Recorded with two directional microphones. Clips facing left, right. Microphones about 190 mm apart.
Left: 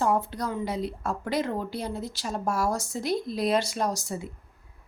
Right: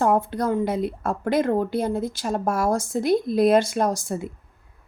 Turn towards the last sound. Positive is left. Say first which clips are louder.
# right 6 dB
turn(degrees=-50)  # may be behind; listen again after turning